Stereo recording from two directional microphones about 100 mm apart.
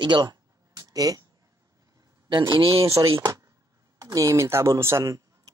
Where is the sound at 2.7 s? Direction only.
30° right (ahead or behind).